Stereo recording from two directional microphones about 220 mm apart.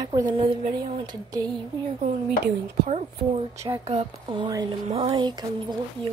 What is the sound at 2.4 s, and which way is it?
Speech, 50° right (ahead or behind).